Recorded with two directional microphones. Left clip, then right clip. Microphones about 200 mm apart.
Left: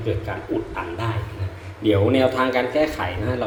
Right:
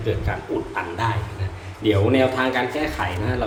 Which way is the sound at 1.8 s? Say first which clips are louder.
Left 1 dB; centre (ahead or behind).